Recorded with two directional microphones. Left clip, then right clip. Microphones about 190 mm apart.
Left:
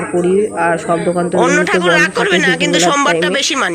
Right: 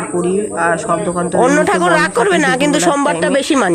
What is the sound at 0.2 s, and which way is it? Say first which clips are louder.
Speech: left 3 dB; 5° left (ahead or behind).